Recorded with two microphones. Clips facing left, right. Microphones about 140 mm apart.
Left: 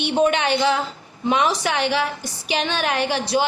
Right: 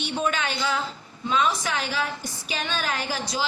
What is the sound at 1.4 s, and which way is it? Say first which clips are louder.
A woman's voice: left 6 dB; 85° left.